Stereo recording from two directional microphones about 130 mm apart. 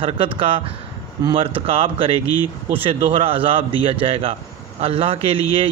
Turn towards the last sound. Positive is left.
turn(degrees=-45)  # may be behind; listen again after turning